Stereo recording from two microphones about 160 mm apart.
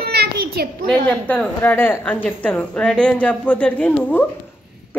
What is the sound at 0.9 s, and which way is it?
A woman's voice, 10° left (ahead or behind).